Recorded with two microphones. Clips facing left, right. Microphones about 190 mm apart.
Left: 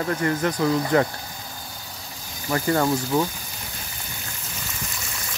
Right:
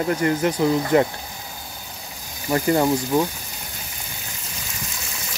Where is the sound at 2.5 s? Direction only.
20° right (ahead or behind).